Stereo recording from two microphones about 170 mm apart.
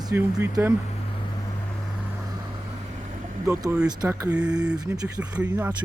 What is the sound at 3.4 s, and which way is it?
Speech, 15° right (ahead or behind).